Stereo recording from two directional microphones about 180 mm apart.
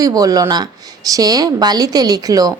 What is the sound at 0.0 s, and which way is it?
Speech, 20° right (ahead or behind).